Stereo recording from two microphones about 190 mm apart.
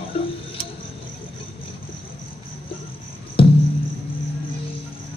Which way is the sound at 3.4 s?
30° left (ahead or behind).